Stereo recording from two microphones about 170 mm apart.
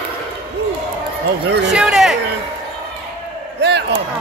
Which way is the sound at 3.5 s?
80° right.